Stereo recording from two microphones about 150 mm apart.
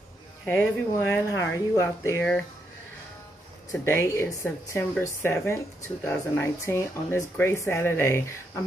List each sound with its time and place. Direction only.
0.5 s speech: 10° left (ahead or behind)
3.7 s speech: 15° left (ahead or behind)